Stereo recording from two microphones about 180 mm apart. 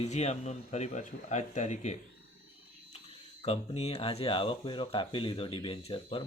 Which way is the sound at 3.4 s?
35° left (ahead or behind).